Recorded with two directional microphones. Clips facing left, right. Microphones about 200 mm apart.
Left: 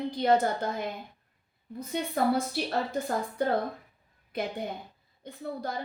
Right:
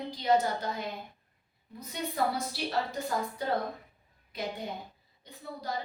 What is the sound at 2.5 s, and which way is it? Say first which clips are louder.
A woman's voice: left 3 dB; 55° left (ahead or behind).